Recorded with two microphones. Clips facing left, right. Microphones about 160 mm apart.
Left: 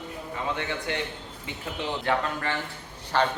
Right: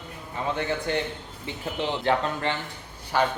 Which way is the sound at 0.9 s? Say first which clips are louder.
Right 3 dB; 35° right (ahead or behind).